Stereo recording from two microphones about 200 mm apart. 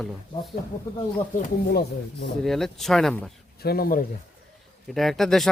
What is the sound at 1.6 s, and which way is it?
Speech, 55° left (ahead or behind).